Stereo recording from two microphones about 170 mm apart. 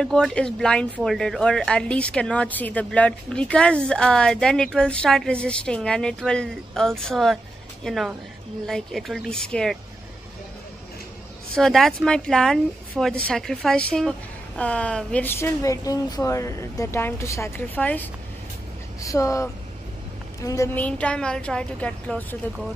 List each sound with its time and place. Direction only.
0.0 s a woman's voice: 5° left (ahead or behind)
11.5 s a woman's voice: centre (ahead or behind)